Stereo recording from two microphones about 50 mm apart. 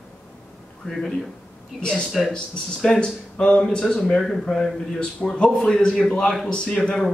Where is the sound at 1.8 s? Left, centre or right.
Centre.